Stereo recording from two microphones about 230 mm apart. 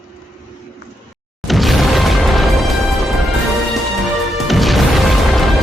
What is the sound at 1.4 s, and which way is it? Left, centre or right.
Music, centre.